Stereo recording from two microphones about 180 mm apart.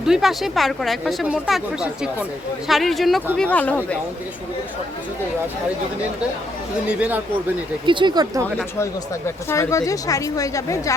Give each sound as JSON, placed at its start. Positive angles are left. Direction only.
{"t": 0.0, "sound": "a woman's voice", "side_deg": 0}
{"t": 6.8, "sound": "speech", "side_deg": -5}
{"t": 7.9, "sound": "speech", "side_deg": -25}
{"t": 8.8, "sound": "speech", "side_deg": 15}